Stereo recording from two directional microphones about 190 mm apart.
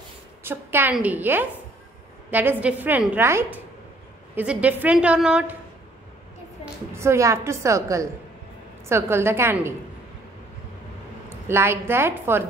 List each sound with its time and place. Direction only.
0.4 s a woman's voice: 10° right (ahead or behind)
6.6 s a woman's voice: 15° right (ahead or behind)
11.2 s a woman's voice: 15° right (ahead or behind)